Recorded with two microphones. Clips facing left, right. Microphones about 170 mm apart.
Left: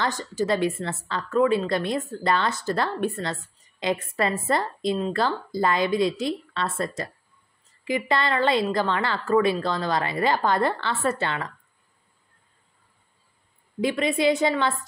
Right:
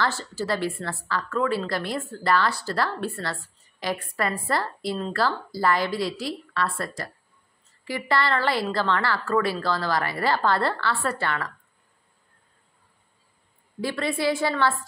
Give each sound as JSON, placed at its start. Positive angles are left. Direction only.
{"t": 0.0, "sound": "a woman's voice", "side_deg": 15}
{"t": 13.7, "sound": "a woman's voice", "side_deg": 20}